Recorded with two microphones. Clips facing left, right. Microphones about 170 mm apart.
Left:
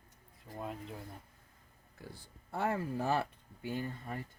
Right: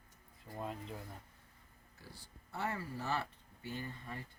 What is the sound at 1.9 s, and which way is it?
Speech, 55° left (ahead or behind).